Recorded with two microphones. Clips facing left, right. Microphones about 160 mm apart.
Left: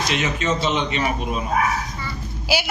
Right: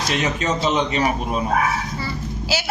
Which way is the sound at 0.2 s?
40° right (ahead or behind).